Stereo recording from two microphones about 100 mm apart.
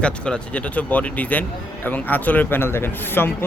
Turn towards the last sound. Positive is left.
turn(degrees=20)  # may be behind; listen again after turning